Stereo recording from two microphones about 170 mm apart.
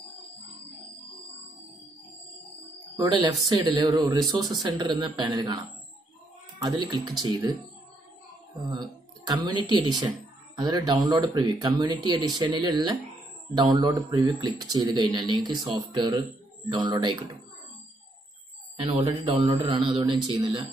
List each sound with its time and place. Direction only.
3.0 s speech: 20° right (ahead or behind)
8.5 s speech: 25° right (ahead or behind)
18.8 s speech: 35° right (ahead or behind)